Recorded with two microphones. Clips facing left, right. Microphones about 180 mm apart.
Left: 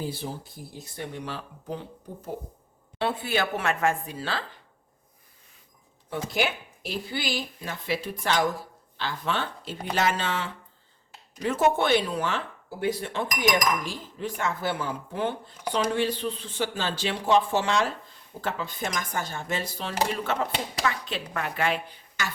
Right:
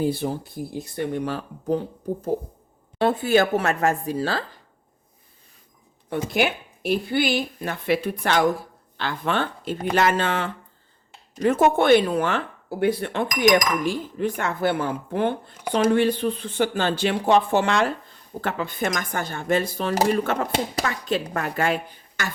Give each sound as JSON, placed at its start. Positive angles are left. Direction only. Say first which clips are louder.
{"t": 0.0, "sound": "dishes", "louder": "right 9 dB", "side_deg": -60}
{"t": 3.0, "sound": "a woman's voice", "louder": "right 8 dB", "side_deg": -45}
{"t": 6.1, "sound": "dishes", "louder": "right 5 dB", "side_deg": -60}
{"t": 18.3, "sound": "speech", "louder": "right 5 dB", "side_deg": -60}